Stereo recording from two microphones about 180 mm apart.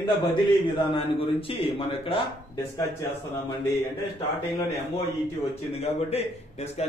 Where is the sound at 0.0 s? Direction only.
25° left (ahead or behind).